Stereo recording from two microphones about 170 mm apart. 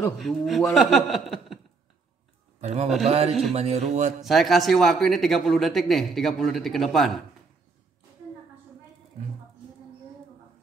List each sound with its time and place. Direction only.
0.2 s speech: centre (ahead or behind)
2.6 s speech: 40° right (ahead or behind)
4.2 s speech: centre (ahead or behind)